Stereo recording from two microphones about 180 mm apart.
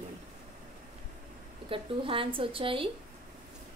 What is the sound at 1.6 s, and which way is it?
Speech, 30° right (ahead or behind).